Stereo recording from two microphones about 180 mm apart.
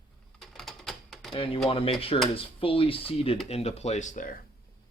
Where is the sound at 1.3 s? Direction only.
30° left (ahead or behind); by 4.3 s 45° left (ahead or behind).